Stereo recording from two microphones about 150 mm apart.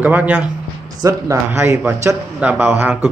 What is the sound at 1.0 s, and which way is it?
A man's voice, 20° right (ahead or behind).